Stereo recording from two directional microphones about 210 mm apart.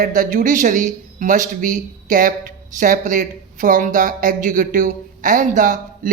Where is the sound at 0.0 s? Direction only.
40° right (ahead or behind).